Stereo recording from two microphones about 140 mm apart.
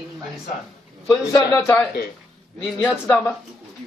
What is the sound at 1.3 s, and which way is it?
Speech, 25° left (ahead or behind).